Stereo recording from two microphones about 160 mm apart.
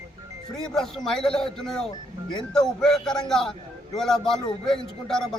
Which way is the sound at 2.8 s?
5° left (ahead or behind).